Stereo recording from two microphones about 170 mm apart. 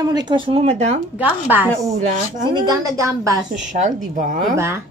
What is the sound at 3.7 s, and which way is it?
Speech, 45° right (ahead or behind).